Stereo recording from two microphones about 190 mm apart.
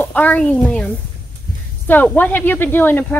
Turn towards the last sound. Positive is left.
turn(degrees=10)  # may be behind; listen again after turning